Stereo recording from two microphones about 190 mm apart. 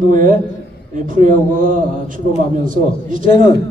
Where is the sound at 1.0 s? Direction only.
45° right (ahead or behind).